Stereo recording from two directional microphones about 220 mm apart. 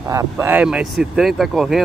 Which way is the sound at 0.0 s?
15° right (ahead or behind).